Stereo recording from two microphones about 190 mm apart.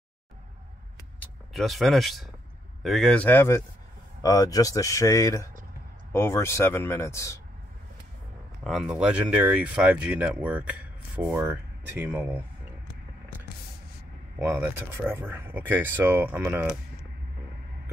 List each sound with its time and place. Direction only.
1.2 s speech: centre (ahead or behind)
8.6 s speech: centre (ahead or behind)
14.4 s speech: 10° right (ahead or behind)